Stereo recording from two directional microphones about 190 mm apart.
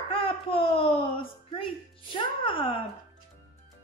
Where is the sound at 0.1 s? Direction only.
30° left (ahead or behind).